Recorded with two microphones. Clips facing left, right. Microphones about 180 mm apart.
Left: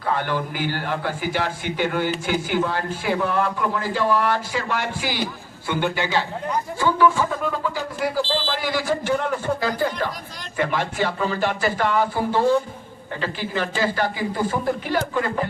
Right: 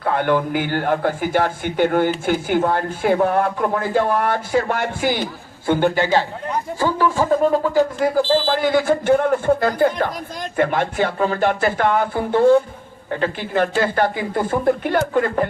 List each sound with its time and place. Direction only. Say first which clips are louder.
0.0 s a man's voice: right 6 dB; 55° right (ahead or behind)